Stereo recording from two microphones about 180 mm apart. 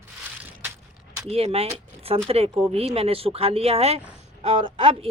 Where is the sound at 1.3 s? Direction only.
35° right (ahead or behind).